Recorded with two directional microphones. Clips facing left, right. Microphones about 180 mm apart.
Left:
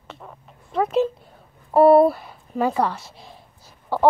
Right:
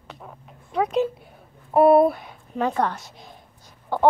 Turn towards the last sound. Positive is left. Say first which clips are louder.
# left 1 dB
turn(degrees=5)  # may be behind; listen again after turning